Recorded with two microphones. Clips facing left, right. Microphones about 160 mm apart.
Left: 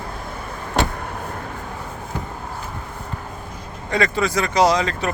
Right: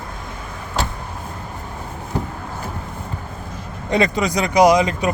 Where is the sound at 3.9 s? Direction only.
20° right (ahead or behind).